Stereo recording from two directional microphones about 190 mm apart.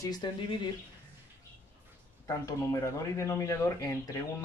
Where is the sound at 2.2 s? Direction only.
15° left (ahead or behind).